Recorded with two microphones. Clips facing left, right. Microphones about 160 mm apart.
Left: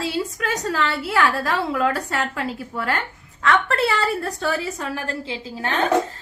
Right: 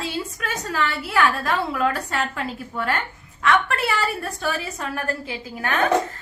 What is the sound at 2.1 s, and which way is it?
Speech, 25° right (ahead or behind).